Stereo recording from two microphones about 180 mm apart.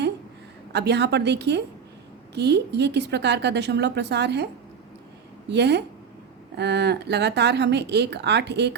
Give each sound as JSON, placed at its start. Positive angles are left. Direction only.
{"t": 0.7, "sound": "speech", "side_deg": -70}
{"t": 5.5, "sound": "speech", "side_deg": -70}